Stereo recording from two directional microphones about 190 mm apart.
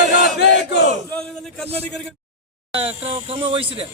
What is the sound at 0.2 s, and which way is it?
Battle cry, 60° left (ahead or behind).